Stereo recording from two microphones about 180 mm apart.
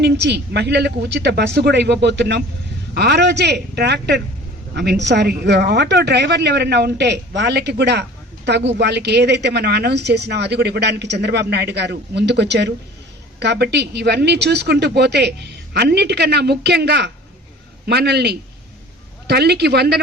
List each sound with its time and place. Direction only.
0.0 s a woman's voice: 70° right (ahead or behind)